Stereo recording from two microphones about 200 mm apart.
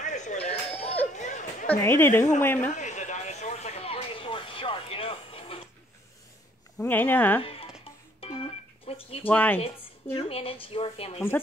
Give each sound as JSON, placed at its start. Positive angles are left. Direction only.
{"t": 0.0, "sound": "a sound", "side_deg": 35}
{"t": 1.1, "sound": "chatter", "side_deg": 40}
{"t": 1.7, "sound": "a woman's voice", "side_deg": 10}
{"t": 2.7, "sound": "a sound", "side_deg": 35}
{"t": 6.8, "sound": "a woman's voice", "side_deg": 10}
{"t": 8.2, "sound": "music", "side_deg": 30}
{"t": 9.2, "sound": "a woman's voice", "side_deg": 10}
{"t": 10.1, "sound": "speech", "side_deg": 30}
{"t": 11.1, "sound": "a woman's voice", "side_deg": 10}